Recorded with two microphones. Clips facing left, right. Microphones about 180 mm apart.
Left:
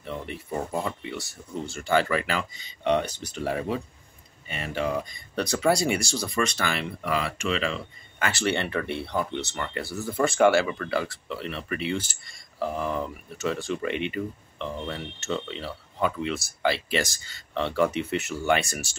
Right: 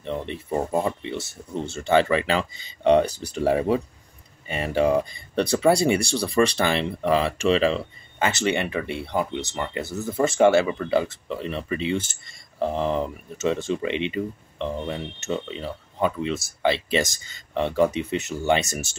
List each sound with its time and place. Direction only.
0.0 s speech: 20° right (ahead or behind)